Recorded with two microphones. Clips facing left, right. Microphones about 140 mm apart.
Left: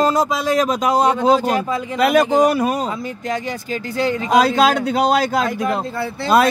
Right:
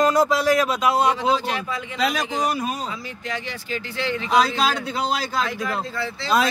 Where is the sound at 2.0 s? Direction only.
55° left (ahead or behind).